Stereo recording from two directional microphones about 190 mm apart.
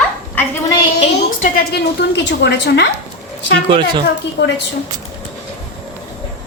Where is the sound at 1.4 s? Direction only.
50° left (ahead or behind).